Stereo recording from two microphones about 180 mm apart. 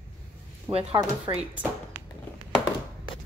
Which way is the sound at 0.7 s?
30° right (ahead or behind).